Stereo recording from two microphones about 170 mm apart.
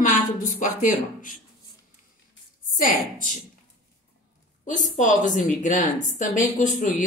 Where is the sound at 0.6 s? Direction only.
50° left (ahead or behind).